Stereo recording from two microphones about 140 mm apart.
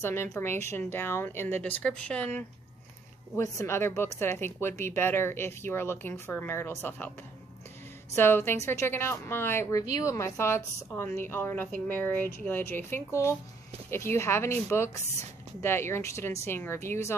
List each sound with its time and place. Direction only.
0.0 s a woman's voice: 15° left (ahead or behind)
8.1 s a woman's voice: 15° left (ahead or behind)